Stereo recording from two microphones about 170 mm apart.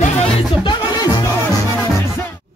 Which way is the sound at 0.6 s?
25° left (ahead or behind).